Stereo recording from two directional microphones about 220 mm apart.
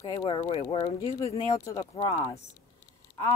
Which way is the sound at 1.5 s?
15° left (ahead or behind).